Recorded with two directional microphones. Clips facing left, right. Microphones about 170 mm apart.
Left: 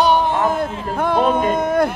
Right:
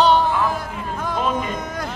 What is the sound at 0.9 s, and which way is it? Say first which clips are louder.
Speech: left 6 dB; 60° left (ahead or behind).